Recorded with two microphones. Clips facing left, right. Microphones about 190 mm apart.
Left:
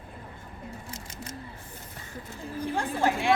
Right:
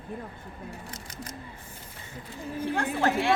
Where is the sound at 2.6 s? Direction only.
15° left (ahead or behind).